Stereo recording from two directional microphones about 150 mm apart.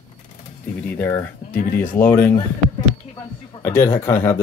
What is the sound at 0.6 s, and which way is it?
Typing, 15° left (ahead or behind).